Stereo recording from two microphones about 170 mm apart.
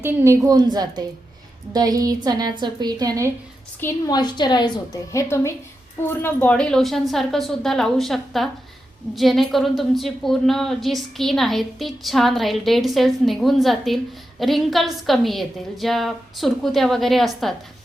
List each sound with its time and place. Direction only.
0.0 s a woman's voice: 20° right (ahead or behind)
4.1 s a woman's voice: 25° left (ahead or behind); by 17.5 s centre (ahead or behind)